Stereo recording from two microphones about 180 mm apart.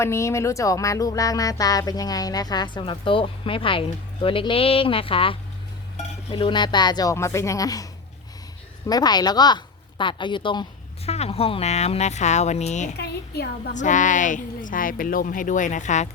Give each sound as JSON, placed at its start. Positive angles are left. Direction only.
{"t": 0.0, "sound": "speech", "side_deg": 15}
{"t": 8.9, "sound": "a woman's voice", "side_deg": 20}
{"t": 13.0, "sound": "a woman's voice", "side_deg": 65}
{"t": 13.7, "sound": "speech", "side_deg": 45}